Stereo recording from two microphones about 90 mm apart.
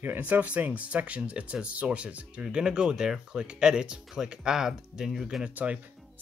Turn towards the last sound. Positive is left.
turn(degrees=-15)  # may be behind; listen again after turning